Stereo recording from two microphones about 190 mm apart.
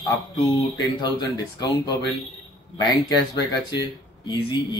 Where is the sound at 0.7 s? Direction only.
20° left (ahead or behind).